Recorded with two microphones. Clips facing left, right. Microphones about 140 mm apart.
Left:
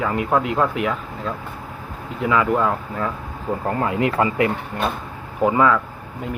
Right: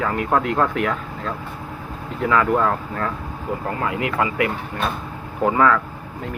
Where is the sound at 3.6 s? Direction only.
30° left (ahead or behind).